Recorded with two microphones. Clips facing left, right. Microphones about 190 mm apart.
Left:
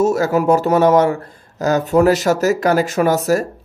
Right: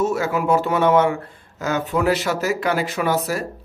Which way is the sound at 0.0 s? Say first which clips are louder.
Left 6 dB; 40° left (ahead or behind).